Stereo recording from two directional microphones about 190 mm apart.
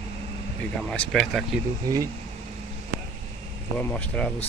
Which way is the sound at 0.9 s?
Centre (ahead or behind).